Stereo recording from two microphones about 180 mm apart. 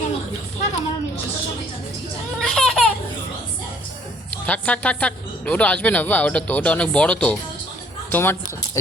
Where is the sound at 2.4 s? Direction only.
5° left (ahead or behind).